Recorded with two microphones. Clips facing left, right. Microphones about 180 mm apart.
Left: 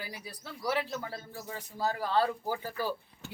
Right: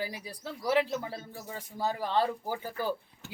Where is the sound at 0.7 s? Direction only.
20° right (ahead or behind).